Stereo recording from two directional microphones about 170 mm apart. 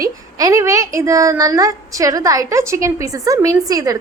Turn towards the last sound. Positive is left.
turn(degrees=-20)  # may be behind; listen again after turning